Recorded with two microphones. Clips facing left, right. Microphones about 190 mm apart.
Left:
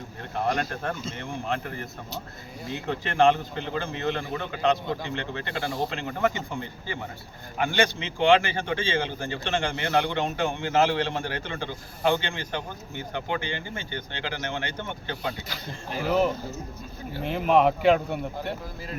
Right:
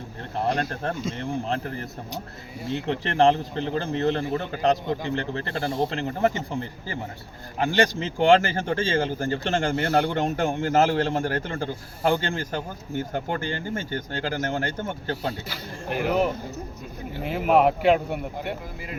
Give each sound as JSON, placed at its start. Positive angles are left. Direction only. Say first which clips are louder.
{"t": 0.3, "sound": "speech", "louder": "right 1 dB", "side_deg": -30}
{"t": 6.0, "sound": "a man's voice", "louder": "right 3 dB", "side_deg": -35}
{"t": 17.2, "sound": "speech", "louder": "right 1 dB", "side_deg": -5}